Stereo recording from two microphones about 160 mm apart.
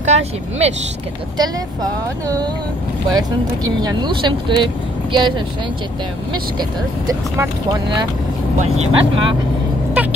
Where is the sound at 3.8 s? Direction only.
25° right (ahead or behind).